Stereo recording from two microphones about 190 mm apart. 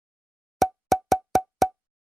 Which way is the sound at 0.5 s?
Centre (ahead or behind).